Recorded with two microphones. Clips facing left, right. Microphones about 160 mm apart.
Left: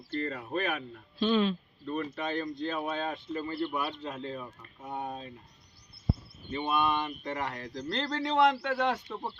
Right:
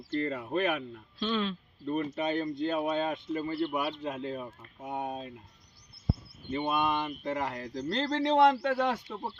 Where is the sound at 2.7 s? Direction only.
15° right (ahead or behind).